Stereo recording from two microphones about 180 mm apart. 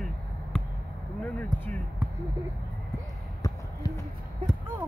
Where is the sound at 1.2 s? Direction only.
10° left (ahead or behind).